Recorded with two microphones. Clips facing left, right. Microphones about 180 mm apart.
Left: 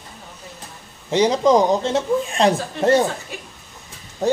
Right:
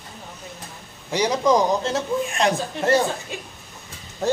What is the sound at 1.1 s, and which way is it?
Speech, 25° left (ahead or behind).